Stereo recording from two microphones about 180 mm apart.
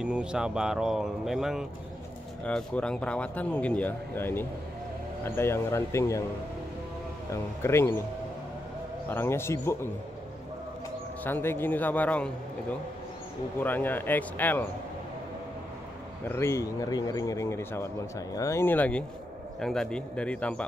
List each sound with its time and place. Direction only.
0.0 s speech: 5° right (ahead or behind); by 6.2 s 15° left (ahead or behind)
7.6 s speech: 15° left (ahead or behind)
9.1 s speech: 15° left (ahead or behind)
11.2 s speech: 10° left (ahead or behind)
13.6 s speech: 10° left (ahead or behind)
16.3 s speech: 15° left (ahead or behind)